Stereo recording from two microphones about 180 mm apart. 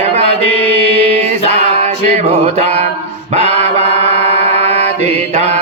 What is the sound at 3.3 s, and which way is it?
Mantra, 35° right (ahead or behind).